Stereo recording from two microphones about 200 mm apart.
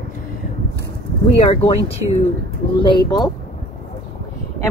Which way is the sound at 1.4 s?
30° left (ahead or behind).